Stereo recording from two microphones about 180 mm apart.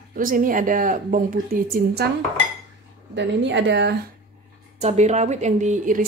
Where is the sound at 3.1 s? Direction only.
80° right.